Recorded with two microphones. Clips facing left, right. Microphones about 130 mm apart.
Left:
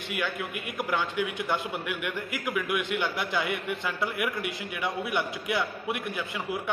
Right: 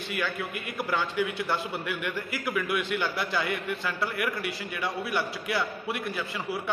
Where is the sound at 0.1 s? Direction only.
15° left (ahead or behind).